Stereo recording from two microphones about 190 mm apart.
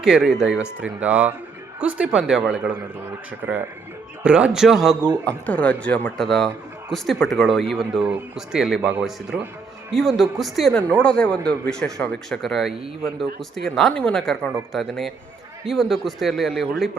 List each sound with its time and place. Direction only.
0.0 s a man's voice: 5° right (ahead or behind)